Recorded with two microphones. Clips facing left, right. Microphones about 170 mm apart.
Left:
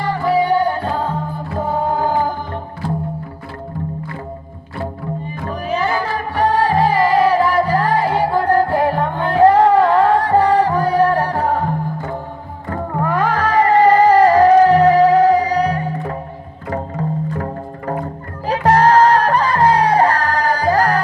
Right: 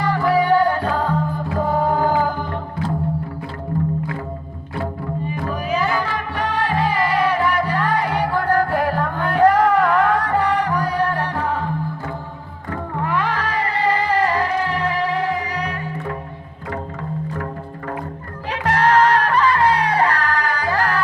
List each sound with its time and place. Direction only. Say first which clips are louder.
0.3 s music: left 1 dB; 25° left (ahead or behind)
5.5 s music: left 3 dB; 30° left (ahead or behind)
12.7 s music: left 4 dB; 45° left (ahead or behind)